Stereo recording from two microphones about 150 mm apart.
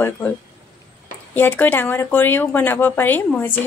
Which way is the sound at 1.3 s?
10° left (ahead or behind).